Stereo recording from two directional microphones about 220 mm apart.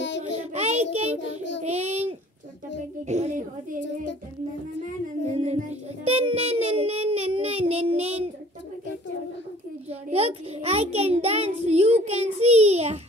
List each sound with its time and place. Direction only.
0.2 s child singing: 30° right (ahead or behind)
1.2 s child singing: 55° left (ahead or behind)
1.6 s child singing: 30° right (ahead or behind)
3.1 s a child's voice: 30° right (ahead or behind)
5.4 s child singing: 30° right (ahead or behind)
9.8 s a child's voice: 30° right (ahead or behind)